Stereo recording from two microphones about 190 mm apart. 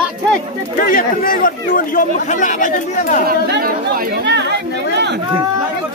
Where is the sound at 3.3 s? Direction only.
55° right (ahead or behind).